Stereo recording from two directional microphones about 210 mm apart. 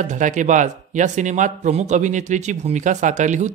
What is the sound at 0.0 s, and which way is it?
Speech, 35° right (ahead or behind).